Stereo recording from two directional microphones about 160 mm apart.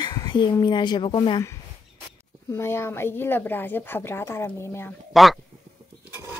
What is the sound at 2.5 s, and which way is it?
A woman's voice, 15° left (ahead or behind).